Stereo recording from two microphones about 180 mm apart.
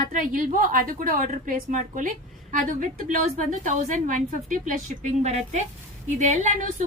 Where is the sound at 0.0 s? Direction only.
45° right (ahead or behind).